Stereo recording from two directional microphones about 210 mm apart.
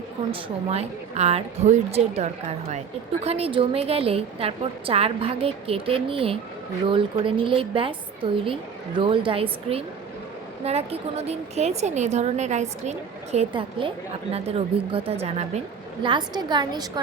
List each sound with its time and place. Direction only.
0.3 s a woman's voice: 25° right (ahead or behind)